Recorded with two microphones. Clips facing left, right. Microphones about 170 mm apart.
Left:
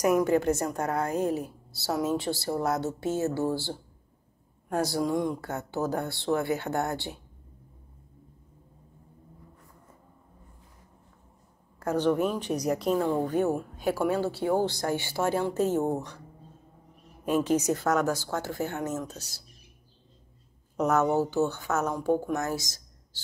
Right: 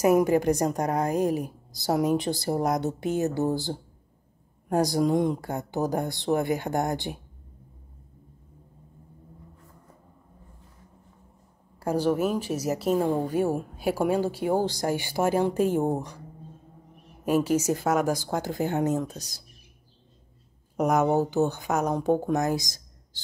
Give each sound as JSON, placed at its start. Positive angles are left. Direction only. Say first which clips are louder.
{"t": 0.2, "sound": "speech", "louder": "right 2 dB", "side_deg": -15}
{"t": 11.8, "sound": "a woman's voice", "louder": "right 1 dB", "side_deg": -10}
{"t": 17.2, "sound": "speech", "louder": "right 2 dB", "side_deg": -10}
{"t": 20.7, "sound": "speech", "louder": "right 2 dB", "side_deg": -10}